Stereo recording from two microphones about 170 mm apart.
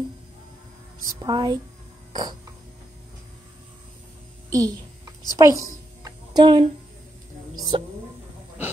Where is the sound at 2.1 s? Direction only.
25° right (ahead or behind).